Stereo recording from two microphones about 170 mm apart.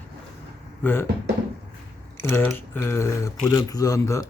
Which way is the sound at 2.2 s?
15° left (ahead or behind).